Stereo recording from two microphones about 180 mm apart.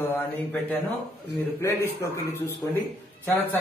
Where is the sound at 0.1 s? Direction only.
10° left (ahead or behind).